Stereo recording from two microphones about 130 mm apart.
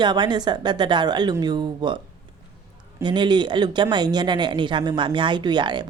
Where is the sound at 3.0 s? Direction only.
35° right (ahead or behind).